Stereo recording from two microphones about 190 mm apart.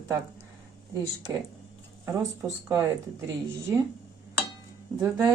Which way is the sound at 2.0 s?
15° right (ahead or behind).